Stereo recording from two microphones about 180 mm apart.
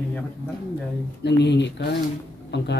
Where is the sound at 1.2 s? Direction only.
70° left (ahead or behind).